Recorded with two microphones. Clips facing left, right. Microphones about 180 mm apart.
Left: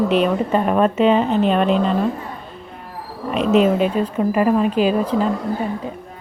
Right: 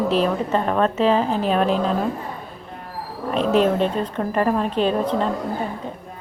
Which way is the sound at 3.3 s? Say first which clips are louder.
Left 3 dB; 5° left (ahead or behind).